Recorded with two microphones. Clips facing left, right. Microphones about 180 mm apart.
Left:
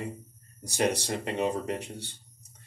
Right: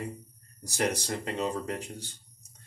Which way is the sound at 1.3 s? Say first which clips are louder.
Left 3 dB; 20° left (ahead or behind).